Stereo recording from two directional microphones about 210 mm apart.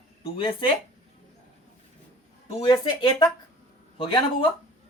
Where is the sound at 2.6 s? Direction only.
20° left (ahead or behind).